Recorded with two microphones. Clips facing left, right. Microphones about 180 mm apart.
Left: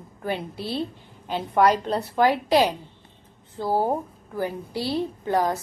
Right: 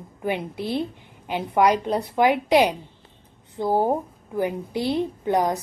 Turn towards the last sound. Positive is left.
turn(degrees=-15)  # may be behind; listen again after turning